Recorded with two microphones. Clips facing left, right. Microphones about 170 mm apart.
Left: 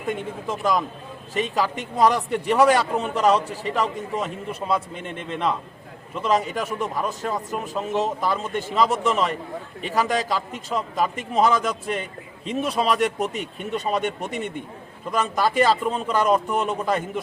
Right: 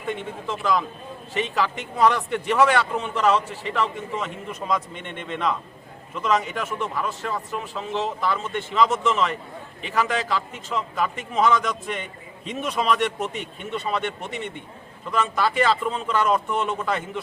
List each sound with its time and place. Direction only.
0.1 s a man's voice: 45° left (ahead or behind)